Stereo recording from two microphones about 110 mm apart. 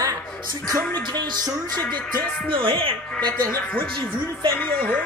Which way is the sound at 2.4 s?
50° right (ahead or behind).